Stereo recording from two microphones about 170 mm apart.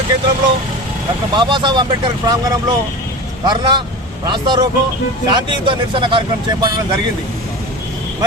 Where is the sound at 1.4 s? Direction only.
30° right (ahead or behind).